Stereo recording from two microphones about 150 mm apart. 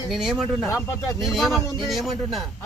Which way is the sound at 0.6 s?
20° left (ahead or behind).